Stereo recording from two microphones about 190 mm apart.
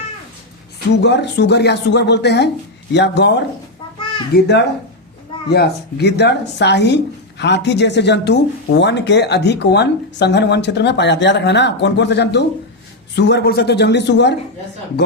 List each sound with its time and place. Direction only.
0.9 s speech: 65° left (ahead or behind)